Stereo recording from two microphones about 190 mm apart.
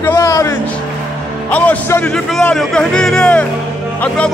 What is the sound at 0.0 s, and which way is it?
Music, 15° left (ahead or behind).